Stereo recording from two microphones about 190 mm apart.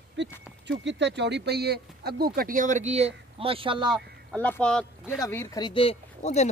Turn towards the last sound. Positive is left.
turn(degrees=35)  # may be behind; listen again after turning